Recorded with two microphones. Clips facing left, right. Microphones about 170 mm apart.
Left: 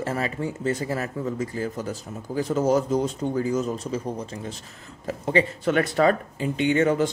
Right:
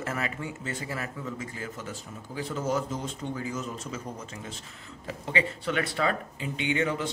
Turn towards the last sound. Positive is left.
turn(degrees=45)  # may be behind; listen again after turning